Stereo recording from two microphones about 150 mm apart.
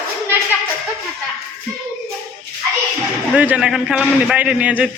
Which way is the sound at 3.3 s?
10° right (ahead or behind).